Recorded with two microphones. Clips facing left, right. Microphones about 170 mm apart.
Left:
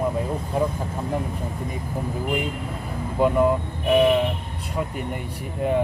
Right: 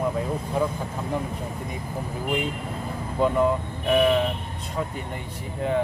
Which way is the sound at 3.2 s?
5° left (ahead or behind).